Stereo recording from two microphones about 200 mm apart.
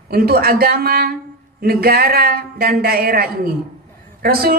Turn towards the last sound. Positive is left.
turn(degrees=-50)  # may be behind; listen again after turning